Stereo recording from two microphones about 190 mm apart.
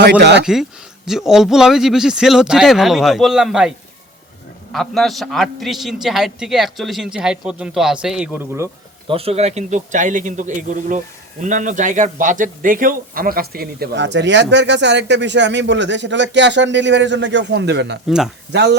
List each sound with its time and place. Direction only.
0.0 s speech: 60° right (ahead or behind)
0.4 s speech: centre (ahead or behind)
9.0 s speech: 30° right (ahead or behind); by 18.8 s 60° right (ahead or behind)